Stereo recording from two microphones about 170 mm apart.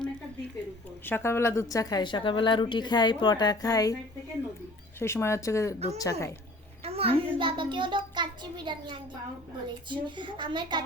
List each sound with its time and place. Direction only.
1.0 s a woman's voice: 15° left (ahead or behind)
4.9 s a woman's voice: 15° left (ahead or behind)
6.8 s a child's voice: 35° right (ahead or behind)